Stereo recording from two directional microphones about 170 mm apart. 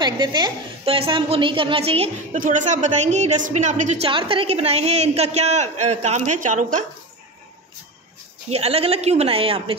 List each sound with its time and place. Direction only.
0.0 s a man's voice: 25° right (ahead or behind); by 4.1 s 45° right (ahead or behind)
4.1 s a man's voice: 30° right (ahead or behind); by 6.9 s 45° right (ahead or behind)
8.5 s a man's voice: 35° right (ahead or behind)